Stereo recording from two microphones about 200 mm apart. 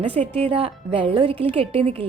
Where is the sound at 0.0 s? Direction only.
30° right (ahead or behind).